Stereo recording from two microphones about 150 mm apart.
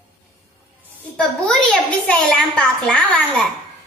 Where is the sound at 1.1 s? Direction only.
5° left (ahead or behind).